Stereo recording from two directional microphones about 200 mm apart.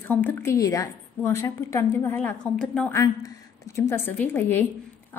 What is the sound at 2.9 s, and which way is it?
A woman's voice, 15° left (ahead or behind).